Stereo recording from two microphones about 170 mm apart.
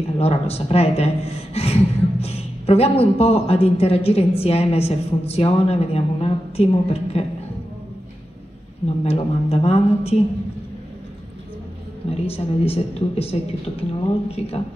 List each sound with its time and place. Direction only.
0.2 s speech: 35° left (ahead or behind)
9.0 s speech: 35° left (ahead or behind)
12.1 s speech: 35° left (ahead or behind)